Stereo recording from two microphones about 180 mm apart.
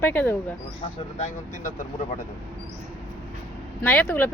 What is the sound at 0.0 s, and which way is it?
Speech, 10° left (ahead or behind).